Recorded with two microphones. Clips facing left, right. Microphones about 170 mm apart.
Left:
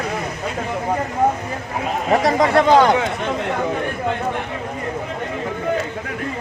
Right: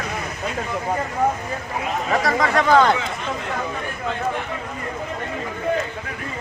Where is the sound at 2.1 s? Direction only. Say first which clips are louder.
Left 5 dB; 25° left (ahead or behind).